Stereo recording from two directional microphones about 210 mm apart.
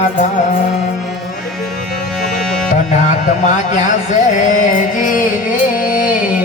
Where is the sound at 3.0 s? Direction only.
35° left (ahead or behind).